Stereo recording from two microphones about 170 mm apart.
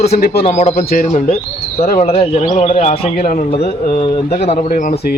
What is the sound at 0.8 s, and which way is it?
Speech, 55° left (ahead or behind).